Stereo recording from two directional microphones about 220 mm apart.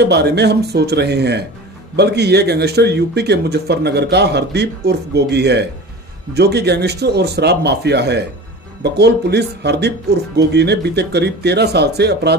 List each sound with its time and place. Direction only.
0.0 s speech: 50° right (ahead or behind)